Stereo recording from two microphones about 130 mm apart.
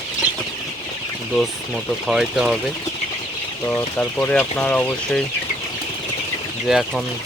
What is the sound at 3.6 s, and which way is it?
Speech, 10° left (ahead or behind).